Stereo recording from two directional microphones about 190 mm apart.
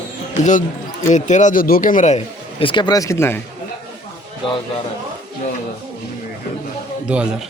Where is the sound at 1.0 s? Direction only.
40° left (ahead or behind); by 3.4 s 15° left (ahead or behind).